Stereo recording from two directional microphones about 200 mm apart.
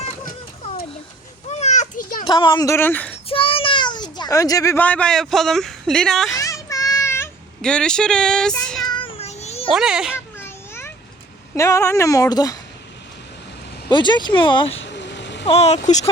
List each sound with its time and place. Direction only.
1.5 s children playing: 35° left (ahead or behind)
2.2 s speech: 25° left (ahead or behind); by 3.2 s 10° left (ahead or behind)
3.2 s a child's voice: 25° left (ahead or behind); by 6.3 s centre (ahead or behind)
6.4 s child singing: 15° left (ahead or behind)
8.9 s cat: 25° left (ahead or behind)
9.7 s a child's voice: 5° right (ahead or behind)
10.3 s a sound: 10° left (ahead or behind)
11.5 s speech: 15° left (ahead or behind)
13.9 s speech: 20° left (ahead or behind)
14.8 s vehicle: 60° left (ahead or behind)
15.4 s speech: 30° left (ahead or behind)